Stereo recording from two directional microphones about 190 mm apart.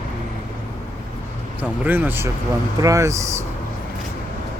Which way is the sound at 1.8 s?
10° right (ahead or behind).